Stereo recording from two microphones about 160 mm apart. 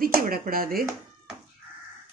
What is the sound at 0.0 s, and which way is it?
Speech, 65° right (ahead or behind).